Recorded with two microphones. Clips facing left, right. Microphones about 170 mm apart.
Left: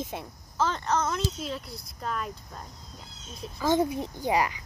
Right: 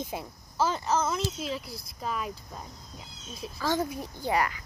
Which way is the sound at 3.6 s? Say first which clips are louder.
Left 4 dB; 20° left (ahead or behind).